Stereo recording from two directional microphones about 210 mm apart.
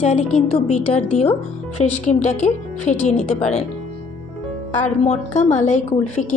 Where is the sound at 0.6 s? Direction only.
90° left.